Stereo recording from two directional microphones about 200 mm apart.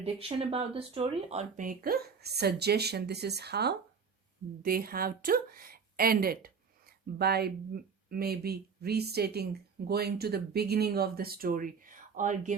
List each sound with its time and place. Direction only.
0.0 s speech: 30° right (ahead or behind)